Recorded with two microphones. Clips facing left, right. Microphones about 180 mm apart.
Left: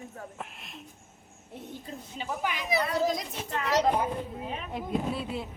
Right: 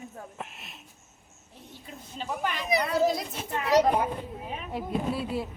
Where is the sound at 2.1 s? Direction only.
10° left (ahead or behind).